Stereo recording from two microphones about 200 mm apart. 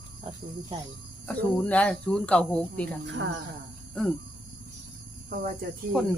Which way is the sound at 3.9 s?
Centre (ahead or behind).